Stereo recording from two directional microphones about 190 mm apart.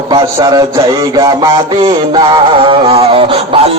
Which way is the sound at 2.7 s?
30° right (ahead or behind).